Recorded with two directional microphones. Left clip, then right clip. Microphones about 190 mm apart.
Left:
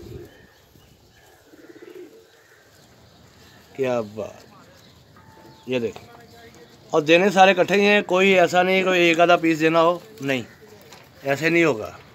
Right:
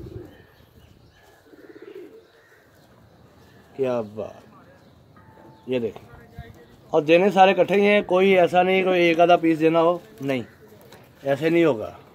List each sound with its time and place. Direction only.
3.7 s speech: 25° left (ahead or behind)
5.7 s speech: 20° left (ahead or behind); by 12.0 s centre (ahead or behind)